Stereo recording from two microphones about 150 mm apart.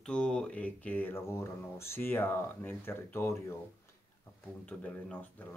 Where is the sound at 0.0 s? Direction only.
5° left (ahead or behind).